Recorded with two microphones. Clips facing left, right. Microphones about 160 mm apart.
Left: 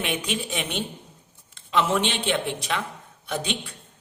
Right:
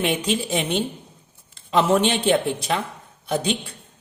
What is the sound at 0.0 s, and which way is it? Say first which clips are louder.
A man's voice: right 5 dB; 30° right (ahead or behind).